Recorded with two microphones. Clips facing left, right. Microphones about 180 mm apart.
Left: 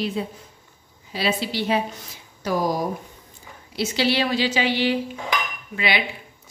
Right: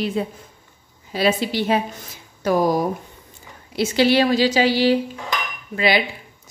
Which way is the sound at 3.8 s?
50° right (ahead or behind).